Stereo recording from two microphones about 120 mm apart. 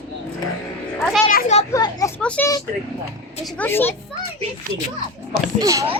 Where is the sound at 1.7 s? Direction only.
30° left (ahead or behind).